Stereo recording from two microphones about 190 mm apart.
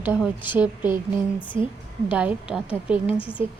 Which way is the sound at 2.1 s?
5° right (ahead or behind).